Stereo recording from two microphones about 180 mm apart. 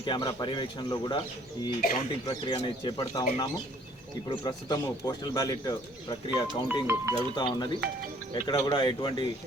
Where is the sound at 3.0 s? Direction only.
20° left (ahead or behind).